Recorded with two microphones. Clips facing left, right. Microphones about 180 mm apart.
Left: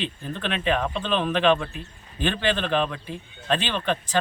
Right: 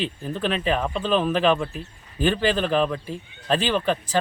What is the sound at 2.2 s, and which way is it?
Speech, 35° right (ahead or behind).